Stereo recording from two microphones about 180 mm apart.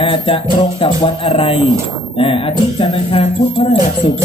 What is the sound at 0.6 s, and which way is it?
Speech, 30° left (ahead or behind).